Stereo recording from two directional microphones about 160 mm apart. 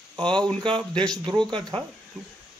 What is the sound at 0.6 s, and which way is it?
A man's voice, 30° right (ahead or behind).